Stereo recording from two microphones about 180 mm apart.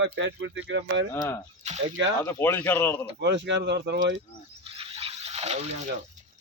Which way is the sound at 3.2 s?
75° right (ahead or behind).